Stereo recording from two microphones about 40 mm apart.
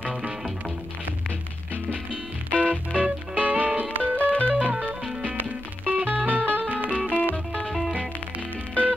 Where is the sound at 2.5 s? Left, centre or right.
Right.